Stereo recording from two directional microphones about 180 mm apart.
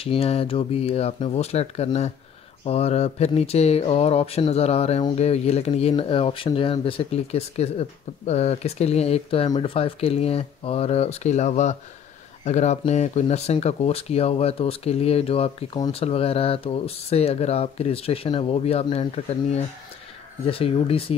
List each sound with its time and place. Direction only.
0.0 s speech: 30° left (ahead or behind)